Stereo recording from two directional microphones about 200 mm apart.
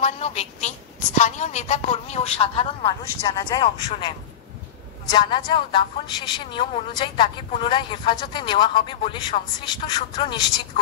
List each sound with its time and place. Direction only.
0.0 s a woman's voice: 30° left (ahead or behind)
5.1 s speech: 25° left (ahead or behind)